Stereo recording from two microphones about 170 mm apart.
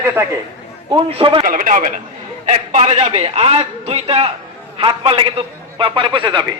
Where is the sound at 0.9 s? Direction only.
30° right (ahead or behind).